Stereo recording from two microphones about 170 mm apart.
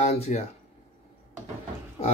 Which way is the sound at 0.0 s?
40° left (ahead or behind).